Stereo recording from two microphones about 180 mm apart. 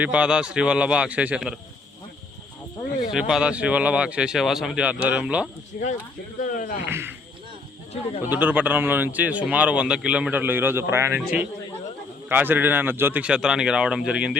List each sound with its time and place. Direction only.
0.0 s speech: 5° right (ahead or behind)
3.1 s speech: 5° right (ahead or behind)
5.7 s speech: 50° left (ahead or behind)
6.4 s a sound: 50° left (ahead or behind)
6.8 s speech: 10° right (ahead or behind)
8.2 s speech: 10° right (ahead or behind)
12.3 s speech: 10° right (ahead or behind)